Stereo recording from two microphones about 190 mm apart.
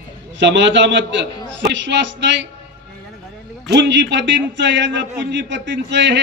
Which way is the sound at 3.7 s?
70° right (ahead or behind).